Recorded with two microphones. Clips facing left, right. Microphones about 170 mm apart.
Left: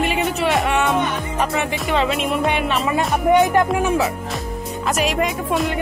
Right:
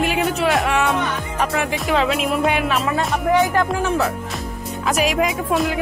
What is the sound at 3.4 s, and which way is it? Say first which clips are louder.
Speech: left 2 dB; 20° left (ahead or behind).